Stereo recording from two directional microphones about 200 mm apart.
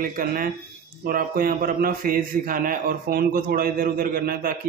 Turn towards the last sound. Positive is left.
turn(degrees=-50)  # may be behind; listen again after turning